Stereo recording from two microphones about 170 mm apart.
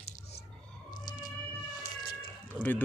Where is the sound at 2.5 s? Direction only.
10° left (ahead or behind).